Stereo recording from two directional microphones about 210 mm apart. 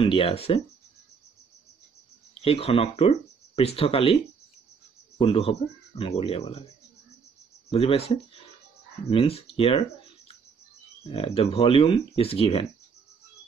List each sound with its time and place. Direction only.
0.0 s speech: 25° left (ahead or behind)
2.4 s speech: 25° left (ahead or behind)
5.2 s speech: 25° left (ahead or behind)
7.7 s speech: 30° left (ahead or behind)